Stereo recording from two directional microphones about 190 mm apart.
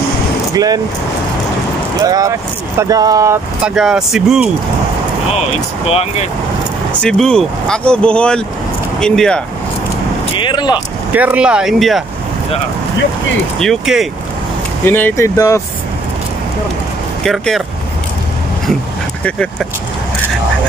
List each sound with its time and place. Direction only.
2.0 s speech: 20° right (ahead or behind)
3.6 s speech: 5° right (ahead or behind)
5.9 s speech: 30° left (ahead or behind)
7.0 s speech: 5° left (ahead or behind)
10.4 s vehicle: 25° left (ahead or behind)
11.1 s speech: 5° right (ahead or behind)
13.6 s speech: centre (ahead or behind)
14.9 s speech: 10° left (ahead or behind)
17.2 s speech: centre (ahead or behind)
19.2 s speech: 5° left (ahead or behind)